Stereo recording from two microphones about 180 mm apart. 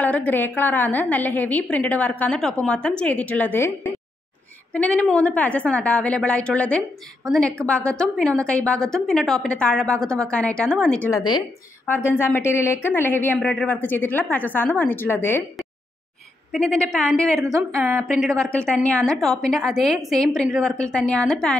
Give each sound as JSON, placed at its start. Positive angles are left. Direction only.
{"t": 0.0, "sound": "a woman's voice", "side_deg": 10}
{"t": 16.5, "sound": "a woman's voice", "side_deg": 5}
{"t": 17.4, "sound": "a woman's voice", "side_deg": -15}
{"t": 18.0, "sound": "a woman's voice", "side_deg": 0}